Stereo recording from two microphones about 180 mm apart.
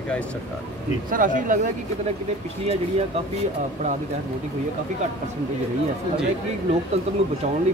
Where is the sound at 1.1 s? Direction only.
50° right (ahead or behind).